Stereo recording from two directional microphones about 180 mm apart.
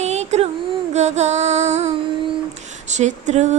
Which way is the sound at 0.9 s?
40° right (ahead or behind).